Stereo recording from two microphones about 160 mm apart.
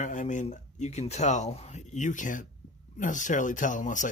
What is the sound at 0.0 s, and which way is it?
Speech, 50° left (ahead or behind).